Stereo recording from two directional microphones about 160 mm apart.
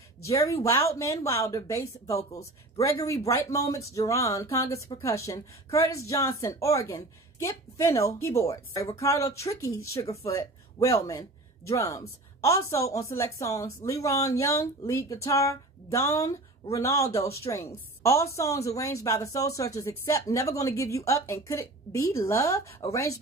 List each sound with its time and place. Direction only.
0.5 s speech: 15° left (ahead or behind)
3.3 s a woman's voice: 20° left (ahead or behind)